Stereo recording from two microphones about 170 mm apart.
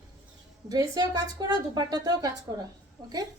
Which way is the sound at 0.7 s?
20° right (ahead or behind).